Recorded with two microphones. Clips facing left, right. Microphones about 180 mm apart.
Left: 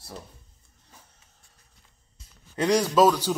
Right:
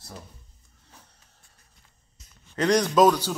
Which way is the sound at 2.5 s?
10° left (ahead or behind).